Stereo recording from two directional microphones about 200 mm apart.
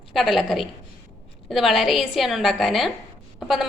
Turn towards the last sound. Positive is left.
turn(degrees=0)  # may be behind; listen again after turning